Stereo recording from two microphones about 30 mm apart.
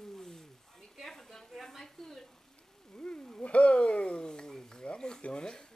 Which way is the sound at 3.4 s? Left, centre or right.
Left.